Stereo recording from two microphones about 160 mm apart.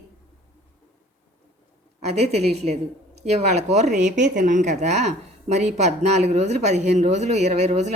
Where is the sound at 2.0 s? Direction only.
45° right (ahead or behind).